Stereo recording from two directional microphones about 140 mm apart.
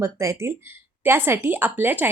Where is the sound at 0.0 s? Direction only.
20° right (ahead or behind).